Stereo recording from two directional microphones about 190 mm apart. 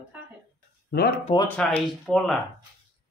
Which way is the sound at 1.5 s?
5° left (ahead or behind).